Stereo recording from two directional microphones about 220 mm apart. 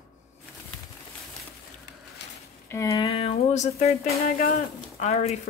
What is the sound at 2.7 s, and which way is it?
Speech, 15° left (ahead or behind).